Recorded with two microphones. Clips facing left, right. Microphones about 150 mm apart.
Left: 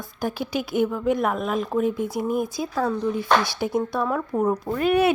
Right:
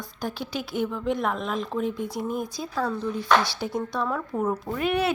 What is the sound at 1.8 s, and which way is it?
Speech, 45° left (ahead or behind).